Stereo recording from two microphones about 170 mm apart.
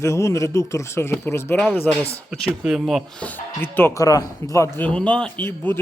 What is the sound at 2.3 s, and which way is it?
Speech, 5° right (ahead or behind).